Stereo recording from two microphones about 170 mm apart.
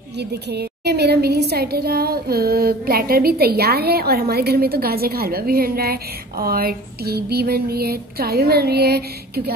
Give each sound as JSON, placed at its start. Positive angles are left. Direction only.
{"t": 0.2, "sound": "a woman's voice", "side_deg": -75}